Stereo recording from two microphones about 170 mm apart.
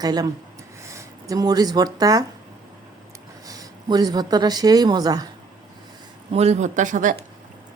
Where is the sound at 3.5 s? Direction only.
20° right (ahead or behind).